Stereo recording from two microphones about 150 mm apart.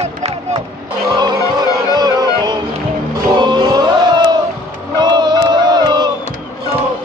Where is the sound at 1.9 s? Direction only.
25° right (ahead or behind).